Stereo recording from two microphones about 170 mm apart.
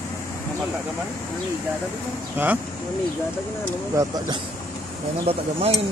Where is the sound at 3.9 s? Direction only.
25° right (ahead or behind).